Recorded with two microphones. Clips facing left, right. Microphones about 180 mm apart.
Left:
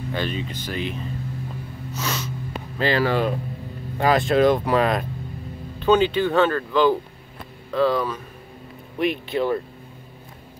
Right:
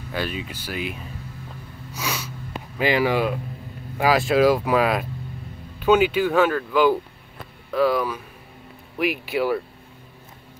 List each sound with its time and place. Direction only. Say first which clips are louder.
0.1 s speech: even; 5° right (ahead or behind)
1.9 s gasp: left 1 dB; 10° right (ahead or behind)
2.8 s speech: even; 15° right (ahead or behind)